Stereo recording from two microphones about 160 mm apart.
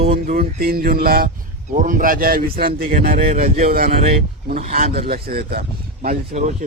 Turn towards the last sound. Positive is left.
turn(degrees=-50)  # may be behind; listen again after turning